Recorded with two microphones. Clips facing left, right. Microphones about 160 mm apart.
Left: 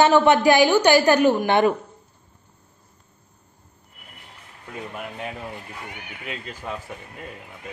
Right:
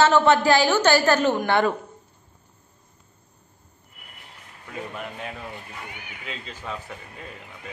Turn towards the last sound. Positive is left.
turn(degrees=5)  # may be behind; listen again after turning